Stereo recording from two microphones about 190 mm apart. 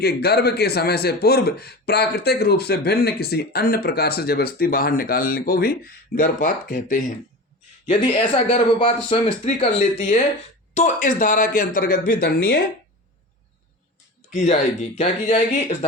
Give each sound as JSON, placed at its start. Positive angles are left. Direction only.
{"t": 0.0, "sound": "speech", "side_deg": 55}
{"t": 7.9, "sound": "speech", "side_deg": 30}
{"t": 14.3, "sound": "speech", "side_deg": 35}